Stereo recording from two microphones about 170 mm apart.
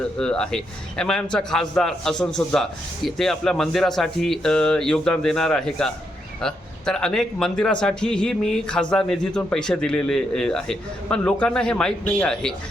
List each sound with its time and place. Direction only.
0.2 s a man's voice: 5° left (ahead or behind)